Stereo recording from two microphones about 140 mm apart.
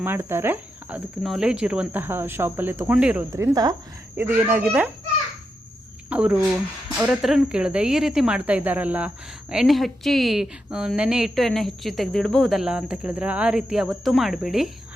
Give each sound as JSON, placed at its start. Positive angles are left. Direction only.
{"t": 0.0, "sound": "speech", "side_deg": -15}
{"t": 3.2, "sound": "speech", "side_deg": -20}
{"t": 4.2, "sound": "speech", "side_deg": -15}
{"t": 6.1, "sound": "a woman's voice", "side_deg": -10}